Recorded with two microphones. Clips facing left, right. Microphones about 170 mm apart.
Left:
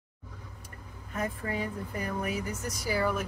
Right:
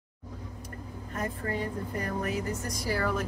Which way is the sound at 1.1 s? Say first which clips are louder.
Even; 10° left (ahead or behind).